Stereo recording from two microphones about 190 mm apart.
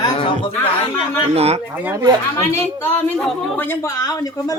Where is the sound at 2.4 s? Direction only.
10° left (ahead or behind).